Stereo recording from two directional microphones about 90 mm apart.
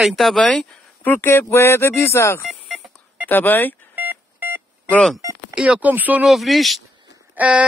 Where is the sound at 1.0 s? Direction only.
25° left (ahead or behind).